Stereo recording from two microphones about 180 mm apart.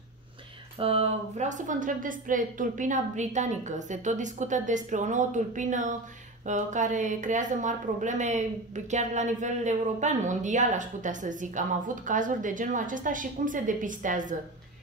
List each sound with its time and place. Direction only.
0.7 s a woman's voice: 35° right (ahead or behind)